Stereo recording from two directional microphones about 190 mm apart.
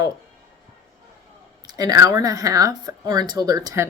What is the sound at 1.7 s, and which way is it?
Speech, 20° right (ahead or behind).